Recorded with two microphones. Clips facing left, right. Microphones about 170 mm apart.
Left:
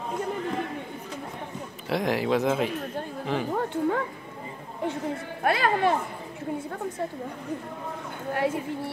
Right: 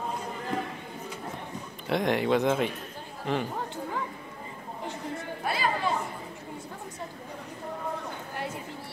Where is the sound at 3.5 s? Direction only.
60° left (ahead or behind).